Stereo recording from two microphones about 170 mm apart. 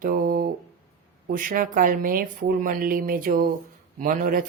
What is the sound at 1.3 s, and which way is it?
A woman's voice, 55° right (ahead or behind).